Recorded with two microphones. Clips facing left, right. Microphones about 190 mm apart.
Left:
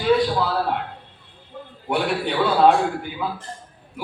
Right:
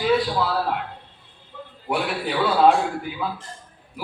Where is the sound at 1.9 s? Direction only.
Centre (ahead or behind).